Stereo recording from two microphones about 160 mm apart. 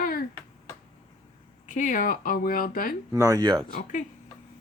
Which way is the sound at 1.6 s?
50° left (ahead or behind).